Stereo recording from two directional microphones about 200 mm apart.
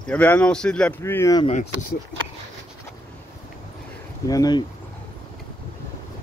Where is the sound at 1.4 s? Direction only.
35° left (ahead or behind).